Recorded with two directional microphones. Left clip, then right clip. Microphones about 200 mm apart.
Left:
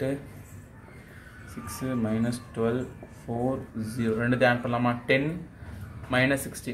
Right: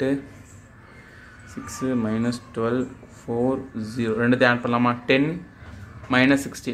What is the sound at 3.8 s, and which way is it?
Speech, 25° right (ahead or behind).